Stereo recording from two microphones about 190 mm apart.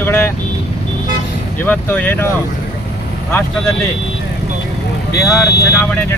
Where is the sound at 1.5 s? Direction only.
10° left (ahead or behind).